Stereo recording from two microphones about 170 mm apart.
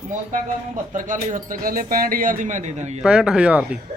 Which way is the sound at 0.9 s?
50° right (ahead or behind).